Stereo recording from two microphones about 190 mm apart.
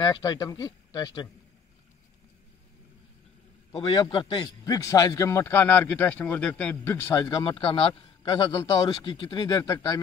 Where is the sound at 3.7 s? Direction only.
25° left (ahead or behind).